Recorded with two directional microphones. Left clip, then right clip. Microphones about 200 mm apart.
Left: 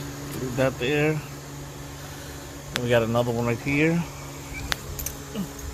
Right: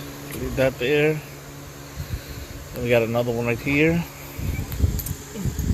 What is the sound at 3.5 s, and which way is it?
Speech, 15° right (ahead or behind).